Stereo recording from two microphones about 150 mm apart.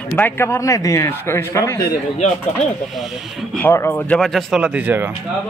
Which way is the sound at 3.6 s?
15° left (ahead or behind).